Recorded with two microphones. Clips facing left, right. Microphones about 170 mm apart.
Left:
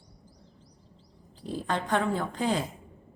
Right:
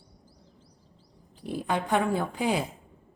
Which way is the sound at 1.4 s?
10° right (ahead or behind).